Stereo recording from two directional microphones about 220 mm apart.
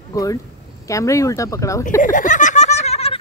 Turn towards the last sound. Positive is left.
turn(degrees=30)  # may be behind; listen again after turning